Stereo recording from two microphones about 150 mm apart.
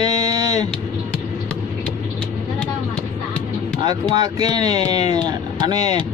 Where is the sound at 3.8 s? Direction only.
25° right (ahead or behind).